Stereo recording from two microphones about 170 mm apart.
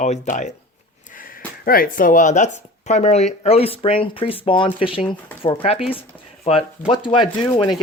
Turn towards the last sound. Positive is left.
turn(degrees=25)  # may be behind; listen again after turning